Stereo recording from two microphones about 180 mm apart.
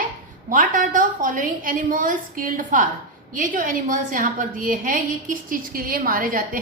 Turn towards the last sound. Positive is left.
turn(degrees=-50)  # may be behind; listen again after turning